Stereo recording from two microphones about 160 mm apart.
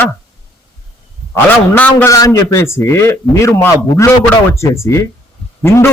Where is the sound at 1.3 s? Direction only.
10° left (ahead or behind).